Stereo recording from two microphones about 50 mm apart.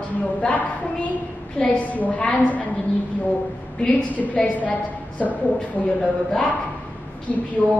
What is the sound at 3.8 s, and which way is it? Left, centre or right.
A woman's voice, left.